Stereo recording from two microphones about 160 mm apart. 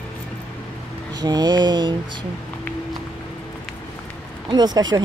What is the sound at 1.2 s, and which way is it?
Speech, 25° right (ahead or behind).